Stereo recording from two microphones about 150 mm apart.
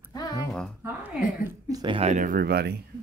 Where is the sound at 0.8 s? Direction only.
15° right (ahead or behind).